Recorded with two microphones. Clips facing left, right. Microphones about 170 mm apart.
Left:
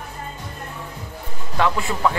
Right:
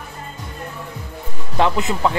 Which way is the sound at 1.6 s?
20° right (ahead or behind).